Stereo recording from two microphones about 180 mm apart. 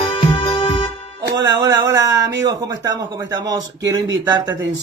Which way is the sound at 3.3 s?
20° right (ahead or behind).